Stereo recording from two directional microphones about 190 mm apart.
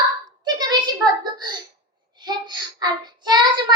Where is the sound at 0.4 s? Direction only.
20° right (ahead or behind).